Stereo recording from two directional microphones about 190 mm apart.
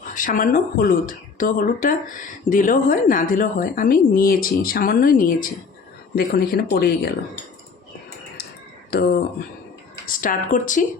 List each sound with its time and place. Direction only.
0.0 s speech: 45° left (ahead or behind)
8.9 s speech: 55° left (ahead or behind)